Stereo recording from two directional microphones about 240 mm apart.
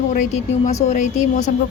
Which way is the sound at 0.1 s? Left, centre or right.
Left.